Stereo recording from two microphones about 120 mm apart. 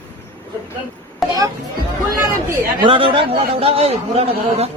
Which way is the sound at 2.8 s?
45° right (ahead or behind).